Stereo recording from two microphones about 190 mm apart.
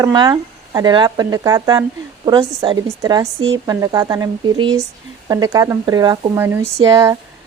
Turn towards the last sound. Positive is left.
turn(degrees=-20)  # may be behind; listen again after turning